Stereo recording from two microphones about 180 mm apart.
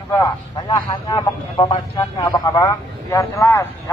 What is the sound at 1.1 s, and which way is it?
A man's voice, 25° left (ahead or behind).